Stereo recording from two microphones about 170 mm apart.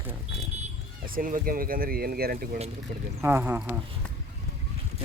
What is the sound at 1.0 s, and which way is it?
Speech, 55° right (ahead or behind).